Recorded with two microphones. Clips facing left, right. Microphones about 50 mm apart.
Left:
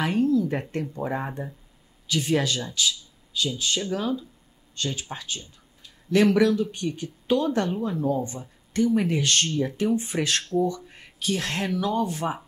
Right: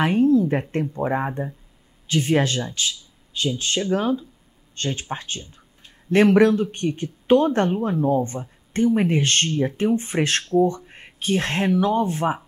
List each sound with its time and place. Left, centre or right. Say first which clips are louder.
0.0 s speech: right 5 dB; right